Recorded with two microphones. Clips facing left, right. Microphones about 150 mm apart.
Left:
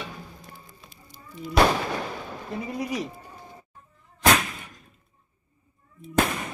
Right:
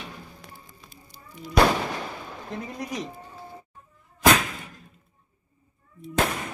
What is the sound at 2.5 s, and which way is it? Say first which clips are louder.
Speech: left 3 dB; 5° left (ahead or behind).